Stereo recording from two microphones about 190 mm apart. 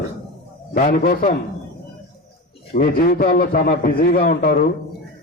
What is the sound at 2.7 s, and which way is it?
A man's voice, 50° left (ahead or behind).